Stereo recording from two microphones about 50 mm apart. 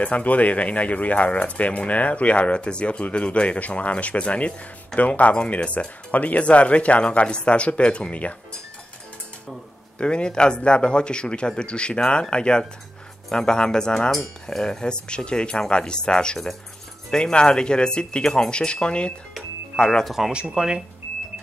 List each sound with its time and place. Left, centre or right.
0.0 s speech: left
9.9 s speech: centre
20.1 s speech: centre
20.3 s speech: centre